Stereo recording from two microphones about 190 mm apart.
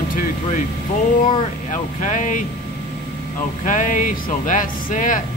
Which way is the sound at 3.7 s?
45° left (ahead or behind).